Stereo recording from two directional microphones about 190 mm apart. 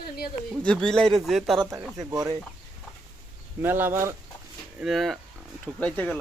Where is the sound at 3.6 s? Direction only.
10° right (ahead or behind).